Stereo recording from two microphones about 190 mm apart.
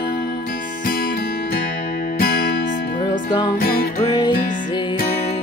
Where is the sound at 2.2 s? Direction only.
55° left (ahead or behind).